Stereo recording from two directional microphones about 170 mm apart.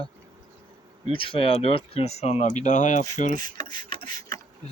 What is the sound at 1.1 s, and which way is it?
Speech, 30° left (ahead or behind).